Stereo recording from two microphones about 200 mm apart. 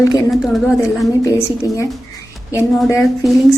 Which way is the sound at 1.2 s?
15° left (ahead or behind).